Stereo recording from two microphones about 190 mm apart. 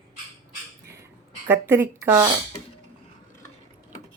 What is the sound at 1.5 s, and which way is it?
Speech, 10° right (ahead or behind).